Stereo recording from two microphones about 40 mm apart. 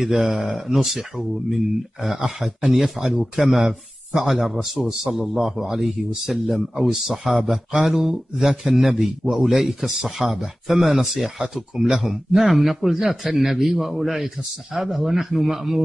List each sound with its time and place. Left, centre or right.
0.0 s speech: centre
3.0 s speech: right
3.3 s speech: centre
11.4 s speech: centre
11.8 s speech: centre